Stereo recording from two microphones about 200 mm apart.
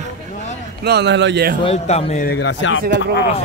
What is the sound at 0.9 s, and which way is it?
Speech, 55° right (ahead or behind).